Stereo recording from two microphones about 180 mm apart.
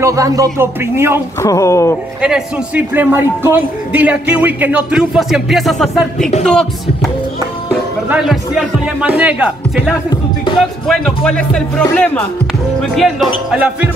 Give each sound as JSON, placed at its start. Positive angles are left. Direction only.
{"t": 0.0, "sound": "speech", "side_deg": -20}
{"t": 1.4, "sound": "speech", "side_deg": 15}
{"t": 2.2, "sound": "speech", "side_deg": -5}
{"t": 8.1, "sound": "speech", "side_deg": -5}
{"t": 10.0, "sound": "music", "side_deg": 25}
{"t": 10.9, "sound": "speech", "side_deg": 5}